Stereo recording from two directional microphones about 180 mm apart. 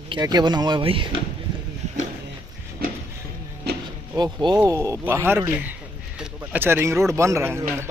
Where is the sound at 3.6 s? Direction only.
65° right (ahead or behind).